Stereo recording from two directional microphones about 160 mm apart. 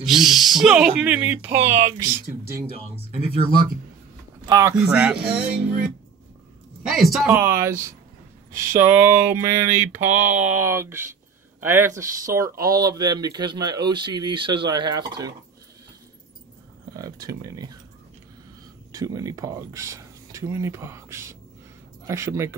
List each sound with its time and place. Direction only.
0.0 s speech: centre (ahead or behind)
2.6 s speech: 35° left (ahead or behind)
4.5 s speech: 20° right (ahead or behind)
4.7 s speech: 10° right (ahead or behind)
7.2 s speech: 15° right (ahead or behind)
16.9 s speech: 20° right (ahead or behind)
18.9 s speech: 20° right (ahead or behind)